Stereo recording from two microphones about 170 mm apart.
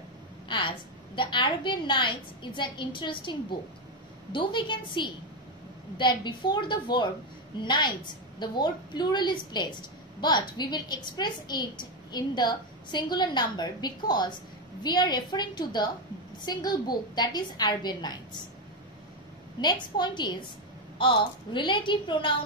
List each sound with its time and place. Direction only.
1.1 s a woman's voice: 30° left (ahead or behind)
19.6 s a woman's voice: 25° left (ahead or behind)